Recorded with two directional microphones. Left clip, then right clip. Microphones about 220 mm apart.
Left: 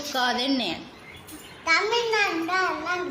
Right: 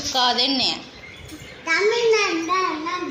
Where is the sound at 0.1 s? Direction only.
20° left (ahead or behind).